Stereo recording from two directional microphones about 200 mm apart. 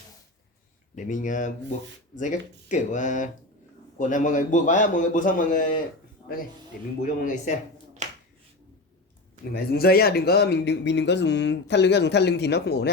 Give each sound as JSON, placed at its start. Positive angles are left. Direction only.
{"t": 0.9, "sound": "a man's voice", "side_deg": 40}
{"t": 7.0, "sound": "a man's voice", "side_deg": 40}
{"t": 8.0, "sound": "finger snapping", "side_deg": -35}
{"t": 9.7, "sound": "speech", "side_deg": 50}